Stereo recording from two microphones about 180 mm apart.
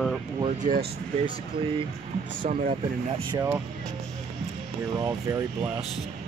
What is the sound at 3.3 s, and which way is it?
Speech, 15° right (ahead or behind).